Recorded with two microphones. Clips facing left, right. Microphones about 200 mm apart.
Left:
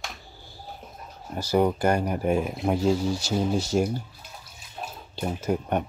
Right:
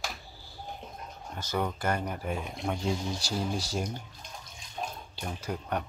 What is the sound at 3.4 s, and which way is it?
Speech, 25° left (ahead or behind).